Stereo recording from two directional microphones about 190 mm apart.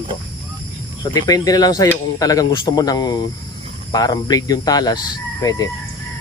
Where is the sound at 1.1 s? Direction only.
20° left (ahead or behind).